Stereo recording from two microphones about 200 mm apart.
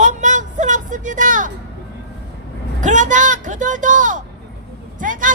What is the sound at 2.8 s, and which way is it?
A man's voice, 40° right (ahead or behind).